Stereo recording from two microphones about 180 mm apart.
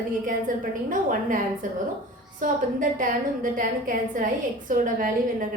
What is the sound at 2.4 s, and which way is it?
A woman's voice, 50° right (ahead or behind).